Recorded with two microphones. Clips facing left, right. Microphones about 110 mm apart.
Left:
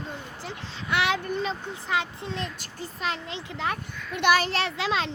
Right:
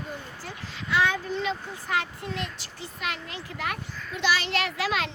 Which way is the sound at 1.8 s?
20° left (ahead or behind).